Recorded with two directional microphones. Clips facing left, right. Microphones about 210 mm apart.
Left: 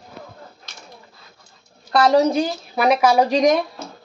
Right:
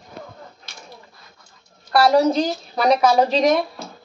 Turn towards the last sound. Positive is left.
turn(degrees=15)  # may be behind; listen again after turning